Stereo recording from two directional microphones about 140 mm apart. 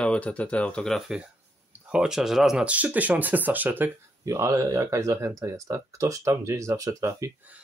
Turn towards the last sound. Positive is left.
turn(degrees=-25)  # may be behind; listen again after turning